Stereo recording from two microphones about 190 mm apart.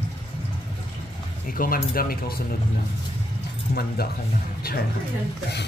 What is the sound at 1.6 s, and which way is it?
Speech, 50° left (ahead or behind).